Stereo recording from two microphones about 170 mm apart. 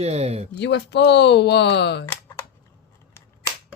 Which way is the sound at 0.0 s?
40° right (ahead or behind).